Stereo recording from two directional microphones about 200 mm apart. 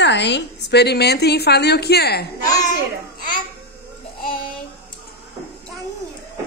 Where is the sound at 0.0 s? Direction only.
60° left (ahead or behind).